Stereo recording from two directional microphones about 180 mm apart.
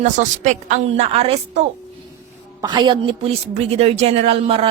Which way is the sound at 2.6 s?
25° right (ahead or behind).